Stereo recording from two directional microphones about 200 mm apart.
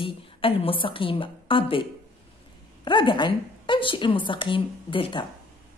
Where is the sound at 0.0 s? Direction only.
30° left (ahead or behind).